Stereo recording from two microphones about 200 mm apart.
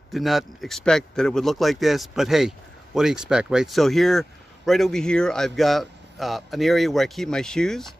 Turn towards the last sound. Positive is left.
turn(degrees=0)  # may be behind; listen again after turning